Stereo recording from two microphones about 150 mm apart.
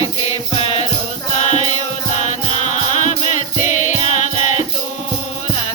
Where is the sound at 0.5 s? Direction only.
45° left (ahead or behind).